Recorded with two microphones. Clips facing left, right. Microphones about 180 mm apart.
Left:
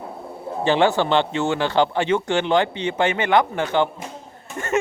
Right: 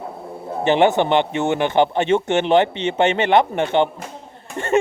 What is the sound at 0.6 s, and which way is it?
A man's voice, 20° right (ahead or behind).